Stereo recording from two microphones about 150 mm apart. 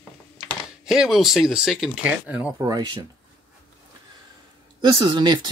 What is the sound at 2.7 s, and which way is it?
Speech, 25° right (ahead or behind).